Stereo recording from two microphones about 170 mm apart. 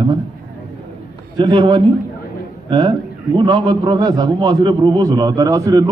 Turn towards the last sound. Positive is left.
turn(degrees=-20)  # may be behind; listen again after turning